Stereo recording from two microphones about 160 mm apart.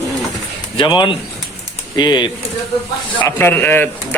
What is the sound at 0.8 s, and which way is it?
Speech, 30° left (ahead or behind).